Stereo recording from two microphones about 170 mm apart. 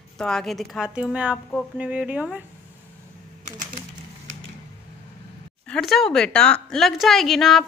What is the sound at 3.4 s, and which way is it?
Typewriter, 50° right (ahead or behind).